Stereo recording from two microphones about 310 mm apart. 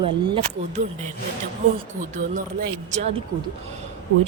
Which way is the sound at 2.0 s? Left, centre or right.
Right.